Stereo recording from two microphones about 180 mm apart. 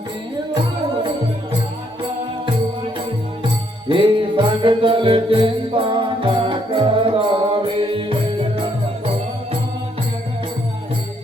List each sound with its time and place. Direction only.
3.8 s music: 30° right (ahead or behind)